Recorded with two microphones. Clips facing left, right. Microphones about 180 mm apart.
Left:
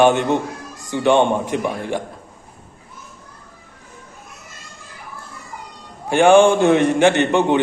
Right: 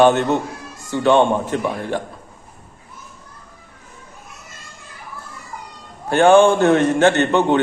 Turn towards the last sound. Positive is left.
turn(degrees=15)  # may be behind; listen again after turning